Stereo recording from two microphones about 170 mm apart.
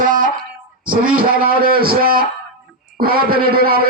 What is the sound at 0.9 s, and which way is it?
Music, 55° right (ahead or behind).